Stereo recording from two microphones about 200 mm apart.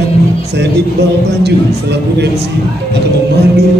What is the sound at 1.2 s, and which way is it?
A man's voice, 55° right (ahead or behind).